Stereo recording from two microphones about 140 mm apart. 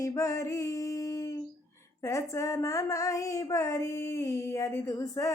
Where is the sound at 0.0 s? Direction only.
20° left (ahead or behind).